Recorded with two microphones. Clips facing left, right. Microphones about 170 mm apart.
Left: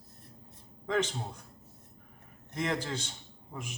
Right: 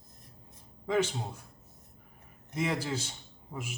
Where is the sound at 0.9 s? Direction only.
10° right (ahead or behind).